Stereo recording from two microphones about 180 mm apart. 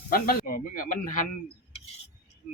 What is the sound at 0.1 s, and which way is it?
Speech, 50° left (ahead or behind).